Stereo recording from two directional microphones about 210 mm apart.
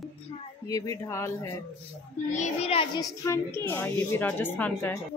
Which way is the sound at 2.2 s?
35° left (ahead or behind).